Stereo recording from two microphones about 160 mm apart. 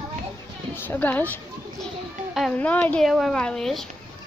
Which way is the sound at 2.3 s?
5° left (ahead or behind).